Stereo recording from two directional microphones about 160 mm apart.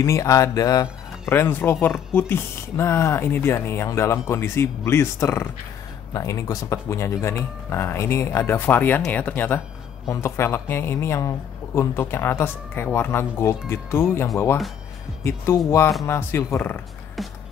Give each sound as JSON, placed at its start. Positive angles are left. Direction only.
{"t": 0.0, "sound": "speech", "side_deg": 20}